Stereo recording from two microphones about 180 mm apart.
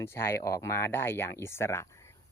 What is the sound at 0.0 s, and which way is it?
Speech, 15° left (ahead or behind).